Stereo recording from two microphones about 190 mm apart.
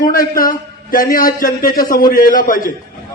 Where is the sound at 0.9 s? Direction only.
50° left (ahead or behind).